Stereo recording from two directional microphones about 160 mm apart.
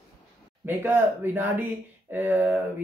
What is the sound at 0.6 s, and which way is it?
A woman's voice, 15° right (ahead or behind).